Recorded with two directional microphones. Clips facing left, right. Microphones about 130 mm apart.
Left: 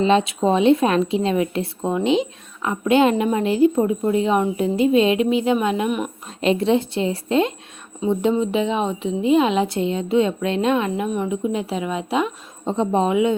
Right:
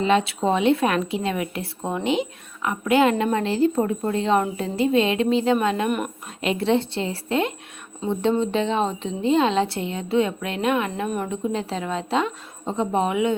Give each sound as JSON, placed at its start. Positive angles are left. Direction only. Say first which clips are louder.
{"t": 0.0, "sound": "a woman's voice", "louder": "left 3 dB", "side_deg": 20}
{"t": 1.8, "sound": "speech", "louder": "left 4 dB", "side_deg": 10}
{"t": 2.0, "sound": "a woman's voice", "louder": "left 2 dB", "side_deg": 25}